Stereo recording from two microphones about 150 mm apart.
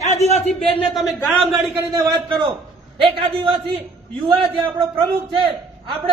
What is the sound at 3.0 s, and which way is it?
Speech, 35° right (ahead or behind).